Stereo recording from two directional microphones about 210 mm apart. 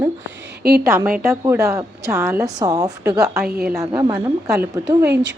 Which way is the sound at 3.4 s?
45° right (ahead or behind).